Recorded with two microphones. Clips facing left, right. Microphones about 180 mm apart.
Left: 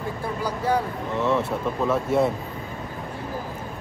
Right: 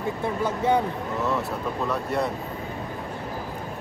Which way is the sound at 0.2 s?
20° right (ahead or behind).